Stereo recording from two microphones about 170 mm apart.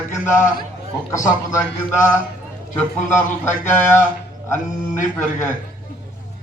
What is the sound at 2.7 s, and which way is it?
A man's voice, 10° left (ahead or behind).